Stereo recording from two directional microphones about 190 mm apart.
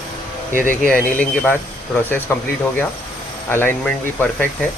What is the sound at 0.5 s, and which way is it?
Speech, 45° left (ahead or behind).